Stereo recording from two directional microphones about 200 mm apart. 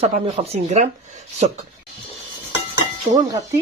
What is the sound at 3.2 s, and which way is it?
Speech, 20° right (ahead or behind).